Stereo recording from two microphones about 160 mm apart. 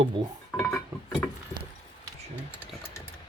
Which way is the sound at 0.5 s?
5° left (ahead or behind).